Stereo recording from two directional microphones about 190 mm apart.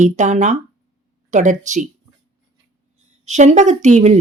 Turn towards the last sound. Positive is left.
turn(degrees=-35)  # may be behind; listen again after turning